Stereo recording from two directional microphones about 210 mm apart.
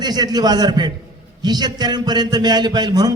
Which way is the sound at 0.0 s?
20° right (ahead or behind).